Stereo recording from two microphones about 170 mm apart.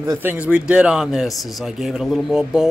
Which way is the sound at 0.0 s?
15° right (ahead or behind).